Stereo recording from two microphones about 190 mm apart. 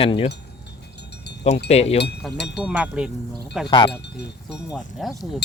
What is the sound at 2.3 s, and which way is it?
Speech, 60° left (ahead or behind).